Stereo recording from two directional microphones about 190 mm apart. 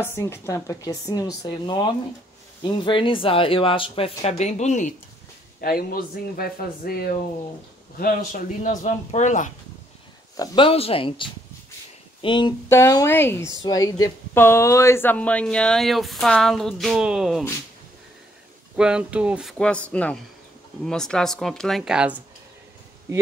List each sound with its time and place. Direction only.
0.0 s speech: 15° left (ahead or behind); by 4.9 s 40° left (ahead or behind)
5.6 s a man's voice: 50° left (ahead or behind)
10.3 s speech: 20° left (ahead or behind); by 17.5 s centre (ahead or behind)
18.8 s speech: 5° right (ahead or behind)